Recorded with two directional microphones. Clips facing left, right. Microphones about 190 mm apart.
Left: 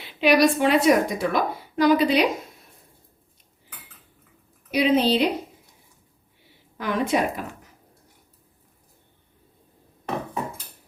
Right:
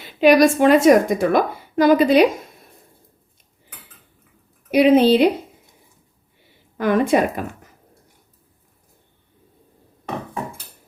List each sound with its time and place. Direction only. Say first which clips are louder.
0.0 s a woman's voice: right 5 dB; 45° right (ahead or behind)
4.7 s a woman's voice: right 7 dB; 55° right (ahead or behind)
6.7 s a woman's voice: right 6 dB; 50° right (ahead or behind)